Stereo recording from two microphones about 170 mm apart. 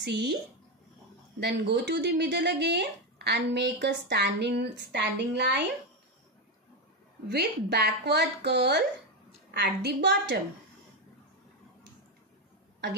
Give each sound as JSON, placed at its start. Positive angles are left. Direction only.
{"t": 0.0, "sound": "speech", "side_deg": -70}
{"t": 1.4, "sound": "speech", "side_deg": -80}
{"t": 7.2, "sound": "speech", "side_deg": -70}